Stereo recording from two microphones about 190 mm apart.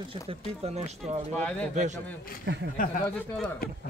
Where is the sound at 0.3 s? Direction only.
35° right (ahead or behind).